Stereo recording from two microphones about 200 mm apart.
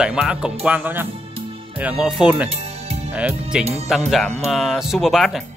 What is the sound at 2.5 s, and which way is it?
Music, 30° right (ahead or behind).